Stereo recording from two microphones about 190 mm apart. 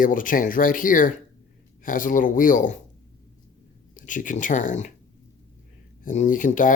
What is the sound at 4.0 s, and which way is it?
Speech, 45° left (ahead or behind).